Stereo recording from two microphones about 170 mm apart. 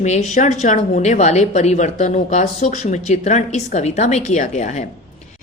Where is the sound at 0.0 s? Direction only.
40° left (ahead or behind).